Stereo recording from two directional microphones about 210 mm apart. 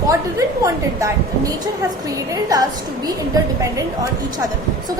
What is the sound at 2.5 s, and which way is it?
Speech, 15° right (ahead or behind).